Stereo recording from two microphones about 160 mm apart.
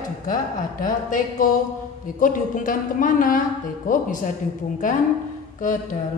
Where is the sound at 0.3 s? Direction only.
60° left (ahead or behind).